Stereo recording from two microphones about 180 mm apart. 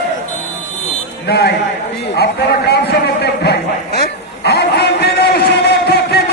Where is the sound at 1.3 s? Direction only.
65° left (ahead or behind).